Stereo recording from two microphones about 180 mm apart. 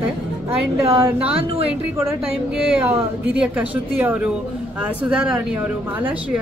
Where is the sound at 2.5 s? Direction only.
5° right (ahead or behind).